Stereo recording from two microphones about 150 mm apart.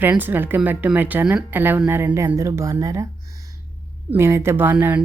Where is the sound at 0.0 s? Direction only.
15° right (ahead or behind).